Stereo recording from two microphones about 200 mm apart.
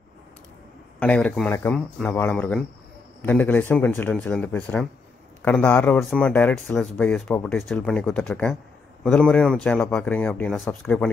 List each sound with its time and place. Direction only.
0.9 s speech: 5° left (ahead or behind)